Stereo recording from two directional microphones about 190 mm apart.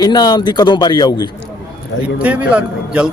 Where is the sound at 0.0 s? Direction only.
20° left (ahead or behind).